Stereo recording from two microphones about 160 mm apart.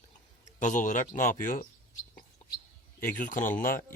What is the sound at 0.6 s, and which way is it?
Speech, 50° left (ahead or behind).